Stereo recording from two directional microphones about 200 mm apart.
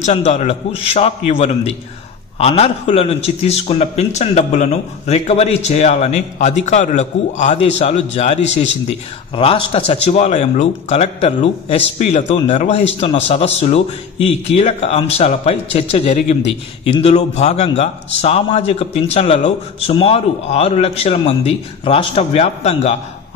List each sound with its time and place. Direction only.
0.0 s a man's voice: 35° left (ahead or behind)